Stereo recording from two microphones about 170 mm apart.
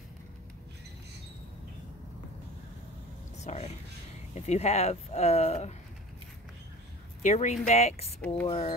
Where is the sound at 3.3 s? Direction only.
40° left (ahead or behind).